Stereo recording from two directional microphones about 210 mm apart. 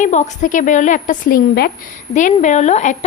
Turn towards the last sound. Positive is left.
turn(degrees=35)  # may be behind; listen again after turning